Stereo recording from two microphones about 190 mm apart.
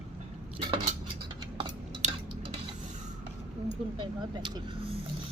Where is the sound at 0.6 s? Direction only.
25° right (ahead or behind).